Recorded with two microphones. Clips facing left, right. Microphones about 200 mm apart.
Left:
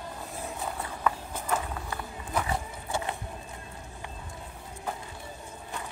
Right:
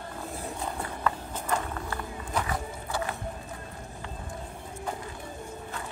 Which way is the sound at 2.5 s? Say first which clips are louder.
Left 1 dB; 25° left (ahead or behind).